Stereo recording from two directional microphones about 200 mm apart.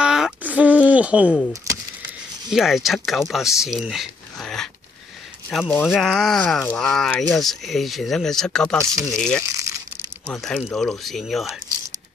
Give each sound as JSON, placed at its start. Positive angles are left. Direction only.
{"t": 0.0, "sound": "a sound", "side_deg": -5}
{"t": 2.5, "sound": "speech", "side_deg": 0}
{"t": 5.7, "sound": "speech", "side_deg": 10}
{"t": 9.5, "sound": "crumpling", "side_deg": -15}
{"t": 10.2, "sound": "speech", "side_deg": 5}